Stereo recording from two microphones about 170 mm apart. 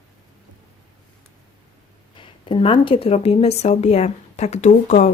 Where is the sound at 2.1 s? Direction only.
30° left (ahead or behind).